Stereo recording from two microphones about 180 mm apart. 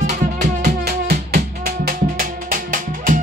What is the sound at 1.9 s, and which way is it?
Music, 50° right (ahead or behind).